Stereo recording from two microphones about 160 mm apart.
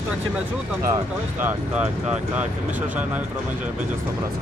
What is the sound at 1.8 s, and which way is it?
Speech, 10° right (ahead or behind).